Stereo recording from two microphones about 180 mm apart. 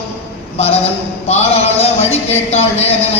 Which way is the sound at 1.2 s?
35° left (ahead or behind).